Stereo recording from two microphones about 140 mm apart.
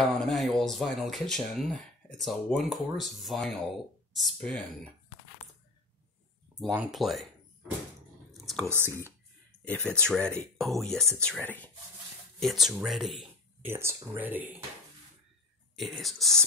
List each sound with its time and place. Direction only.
0.0 s speech: centre (ahead or behind)
6.9 s speech: centre (ahead or behind)
8.3 s whispering: centre (ahead or behind)
8.6 s speech: 15° right (ahead or behind)
9.7 s speech: 10° left (ahead or behind)
12.4 s speech: centre (ahead or behind)
13.6 s speech: 15° right (ahead or behind)
15.7 s speech: centre (ahead or behind)